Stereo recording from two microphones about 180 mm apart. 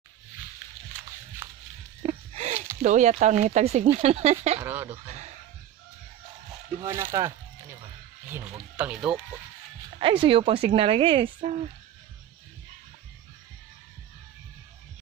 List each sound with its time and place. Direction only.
2.0 s a sound: 35° right (ahead or behind)
2.8 s speech: 40° right (ahead or behind)
4.6 s speech: 10° right (ahead or behind)
6.8 s speech: 15° right (ahead or behind)
8.7 s speech: 5° right (ahead or behind)
9.9 s speech: 30° right (ahead or behind)